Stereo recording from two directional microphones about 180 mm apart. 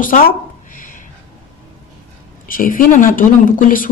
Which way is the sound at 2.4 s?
50° left (ahead or behind).